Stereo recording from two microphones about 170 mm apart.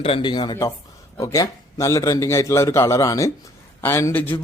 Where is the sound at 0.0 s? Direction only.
30° left (ahead or behind).